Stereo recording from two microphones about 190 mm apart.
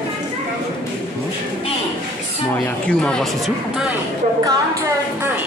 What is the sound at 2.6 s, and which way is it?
Speech, 5° left (ahead or behind).